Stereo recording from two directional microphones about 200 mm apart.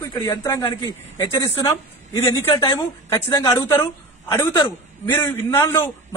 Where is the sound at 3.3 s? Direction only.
15° left (ahead or behind).